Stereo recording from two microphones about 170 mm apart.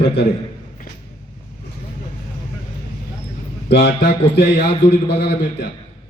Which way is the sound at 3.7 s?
85° left.